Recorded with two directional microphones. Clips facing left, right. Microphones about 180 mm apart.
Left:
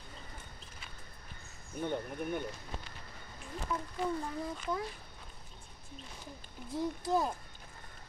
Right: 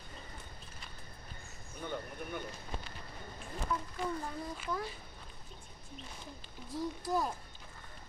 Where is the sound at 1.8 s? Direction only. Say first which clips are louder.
Left 5 dB; 50° left (ahead or behind).